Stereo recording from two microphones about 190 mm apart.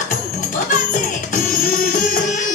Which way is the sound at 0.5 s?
45° left (ahead or behind).